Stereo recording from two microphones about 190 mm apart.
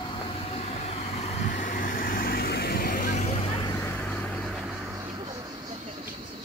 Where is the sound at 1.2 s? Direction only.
45° left (ahead or behind).